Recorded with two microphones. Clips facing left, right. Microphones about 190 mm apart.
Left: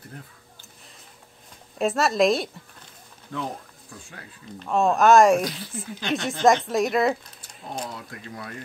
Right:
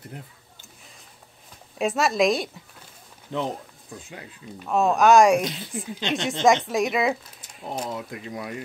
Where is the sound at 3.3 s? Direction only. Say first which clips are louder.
Right 4 dB; 20° right (ahead or behind).